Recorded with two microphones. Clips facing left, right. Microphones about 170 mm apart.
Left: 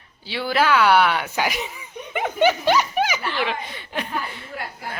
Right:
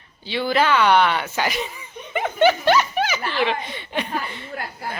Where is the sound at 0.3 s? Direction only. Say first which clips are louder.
Right 1 dB; 5° left (ahead or behind).